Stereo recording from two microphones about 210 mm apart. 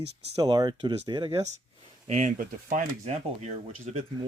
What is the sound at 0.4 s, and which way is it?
Speech, 20° right (ahead or behind).